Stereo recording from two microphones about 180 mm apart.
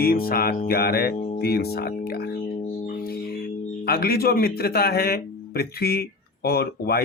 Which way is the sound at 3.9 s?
55° left (ahead or behind).